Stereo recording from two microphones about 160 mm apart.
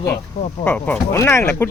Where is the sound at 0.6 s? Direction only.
10° left (ahead or behind).